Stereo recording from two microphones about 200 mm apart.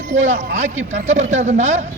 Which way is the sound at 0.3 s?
40° right (ahead or behind).